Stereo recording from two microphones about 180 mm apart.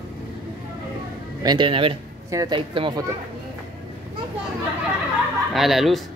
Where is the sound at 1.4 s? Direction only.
25° right (ahead or behind).